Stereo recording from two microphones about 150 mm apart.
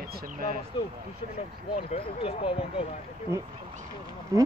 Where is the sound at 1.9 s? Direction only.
40° left (ahead or behind).